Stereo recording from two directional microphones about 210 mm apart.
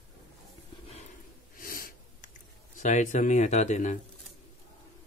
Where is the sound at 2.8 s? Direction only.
35° left (ahead or behind).